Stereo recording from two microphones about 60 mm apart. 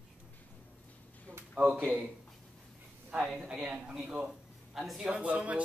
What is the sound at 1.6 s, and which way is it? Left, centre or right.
Speech, right.